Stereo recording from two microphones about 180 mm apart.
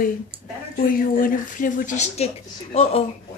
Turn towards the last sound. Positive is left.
turn(degrees=35)  # may be behind; listen again after turning